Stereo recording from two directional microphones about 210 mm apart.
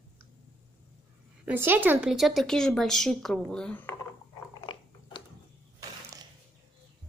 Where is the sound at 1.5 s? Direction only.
10° right (ahead or behind); by 4.0 s 10° left (ahead or behind).